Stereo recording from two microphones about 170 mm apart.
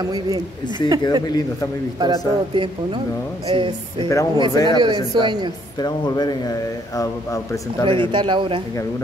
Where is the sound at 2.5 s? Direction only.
30° right (ahead or behind).